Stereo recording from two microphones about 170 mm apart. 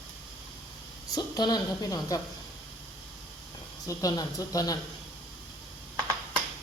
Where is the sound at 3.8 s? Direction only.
20° left (ahead or behind).